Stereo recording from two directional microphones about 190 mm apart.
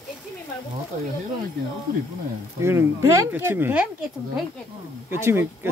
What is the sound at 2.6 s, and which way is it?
Speech, 15° right (ahead or behind).